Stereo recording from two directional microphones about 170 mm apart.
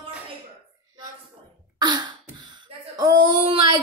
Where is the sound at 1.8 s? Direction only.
25° right (ahead or behind).